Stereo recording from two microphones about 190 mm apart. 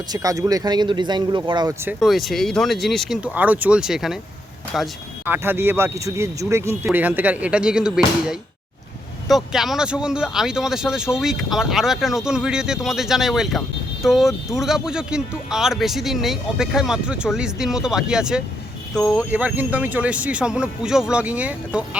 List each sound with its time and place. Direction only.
0.1 s speech: 20° right (ahead or behind)
1.8 s speech: 5° right (ahead or behind)